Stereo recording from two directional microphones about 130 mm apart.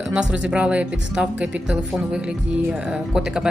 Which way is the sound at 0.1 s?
10° right (ahead or behind).